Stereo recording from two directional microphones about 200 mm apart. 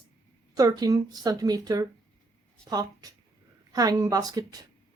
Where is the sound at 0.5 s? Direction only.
20° right (ahead or behind).